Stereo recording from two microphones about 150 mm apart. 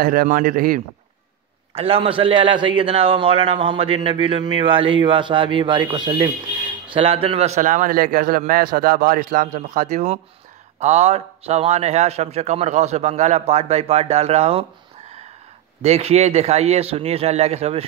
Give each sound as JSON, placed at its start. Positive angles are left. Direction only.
{"t": 0.0, "sound": "speech", "side_deg": -70}
{"t": 1.8, "sound": "a man's voice", "side_deg": -40}
{"t": 15.8, "sound": "a man's voice", "side_deg": -45}